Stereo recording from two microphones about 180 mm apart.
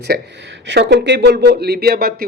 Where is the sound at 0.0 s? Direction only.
70° right (ahead or behind).